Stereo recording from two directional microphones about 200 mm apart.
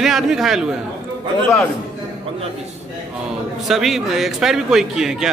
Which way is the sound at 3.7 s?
Centre (ahead or behind).